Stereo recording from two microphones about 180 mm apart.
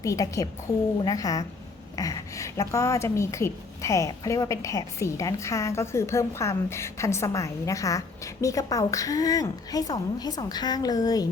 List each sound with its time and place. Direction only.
0.0 s a woman's voice: 20° left (ahead or behind)